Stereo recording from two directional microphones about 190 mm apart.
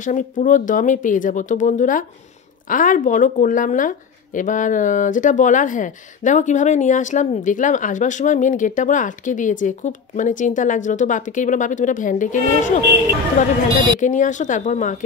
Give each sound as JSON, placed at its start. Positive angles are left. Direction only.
{"t": 0.0, "sound": "speech", "side_deg": 45}
{"t": 13.9, "sound": "speech", "side_deg": 40}